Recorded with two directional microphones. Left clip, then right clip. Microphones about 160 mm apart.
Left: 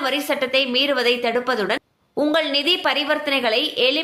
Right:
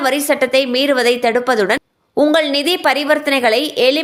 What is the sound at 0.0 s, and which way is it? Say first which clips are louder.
A woman's voice: right 6 dB; 50° right (ahead or behind).